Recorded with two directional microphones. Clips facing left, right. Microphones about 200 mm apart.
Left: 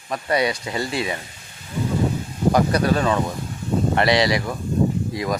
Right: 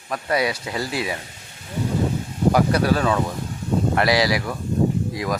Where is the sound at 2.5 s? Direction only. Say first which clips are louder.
Left 1 dB; 5° right (ahead or behind).